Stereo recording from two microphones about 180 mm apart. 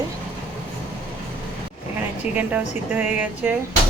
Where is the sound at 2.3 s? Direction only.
10° right (ahead or behind).